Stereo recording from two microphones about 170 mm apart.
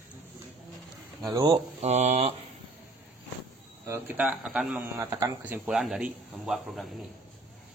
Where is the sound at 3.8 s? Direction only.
15° right (ahead or behind).